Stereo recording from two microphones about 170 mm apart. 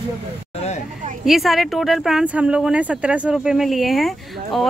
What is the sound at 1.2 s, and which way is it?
Speech, centre (ahead or behind).